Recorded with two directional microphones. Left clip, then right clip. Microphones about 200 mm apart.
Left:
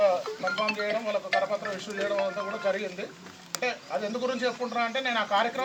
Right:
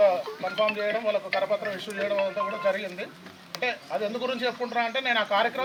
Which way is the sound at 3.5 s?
45° left (ahead or behind).